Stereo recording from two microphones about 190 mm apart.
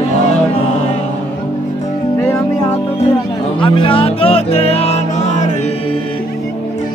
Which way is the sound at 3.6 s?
30° left (ahead or behind).